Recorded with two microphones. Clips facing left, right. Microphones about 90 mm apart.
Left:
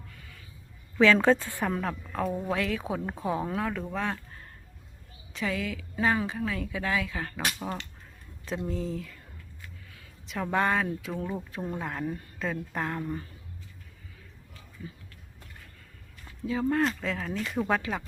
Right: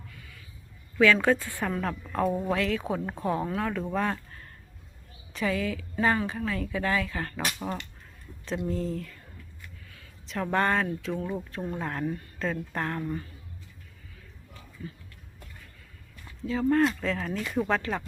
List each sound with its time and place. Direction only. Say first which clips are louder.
0.1 s a sound: right 1 dB; 35° left (ahead or behind)
0.9 s a woman's voice: left 1 dB; 25° left (ahead or behind)
1.8 s speech: right 3 dB; 5° left (ahead or behind)
3.9 s speech: right 5 dB; centre (ahead or behind)
5.3 s speech: right 3 dB; centre (ahead or behind)
10.2 s speech: right 1 dB; 5° left (ahead or behind)
10.8 s speech: right 1 dB; 15° left (ahead or behind)
16.4 s speech: right 3 dB; 10° left (ahead or behind)
17.7 s speech: even; 10° left (ahead or behind)